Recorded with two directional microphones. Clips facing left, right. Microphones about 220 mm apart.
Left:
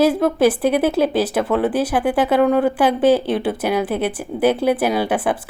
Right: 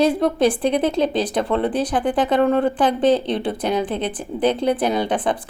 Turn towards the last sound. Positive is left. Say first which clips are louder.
# left 2 dB
turn(degrees=10)  # may be behind; listen again after turning